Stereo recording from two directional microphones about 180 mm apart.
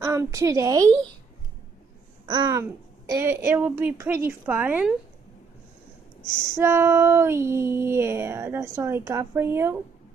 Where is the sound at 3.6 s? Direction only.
10° right (ahead or behind).